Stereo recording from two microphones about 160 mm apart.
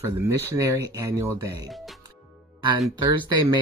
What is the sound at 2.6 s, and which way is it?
Music, 30° right (ahead or behind).